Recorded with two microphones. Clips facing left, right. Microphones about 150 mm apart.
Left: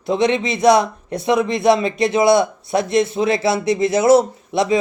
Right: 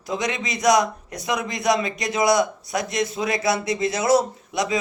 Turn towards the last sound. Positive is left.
turn(degrees=25)  # may be behind; listen again after turning